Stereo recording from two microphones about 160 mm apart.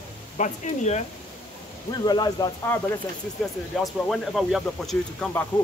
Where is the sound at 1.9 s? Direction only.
25° left (ahead or behind).